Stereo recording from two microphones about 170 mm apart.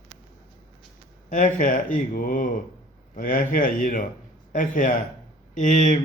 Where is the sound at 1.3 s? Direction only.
45° left (ahead or behind).